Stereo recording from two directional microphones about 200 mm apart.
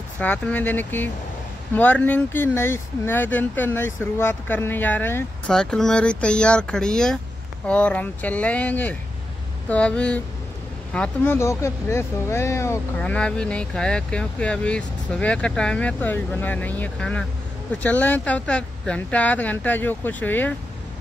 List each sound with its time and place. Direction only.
0.2 s speech: 10° left (ahead or behind)